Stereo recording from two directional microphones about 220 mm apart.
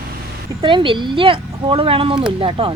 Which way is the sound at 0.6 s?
20° right (ahead or behind).